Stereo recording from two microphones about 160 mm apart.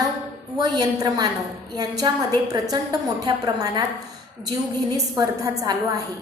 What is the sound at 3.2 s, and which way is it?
A woman's voice, 25° right (ahead or behind).